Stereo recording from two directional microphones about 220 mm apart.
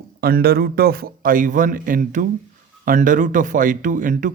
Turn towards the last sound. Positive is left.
turn(degrees=-35)  # may be behind; listen again after turning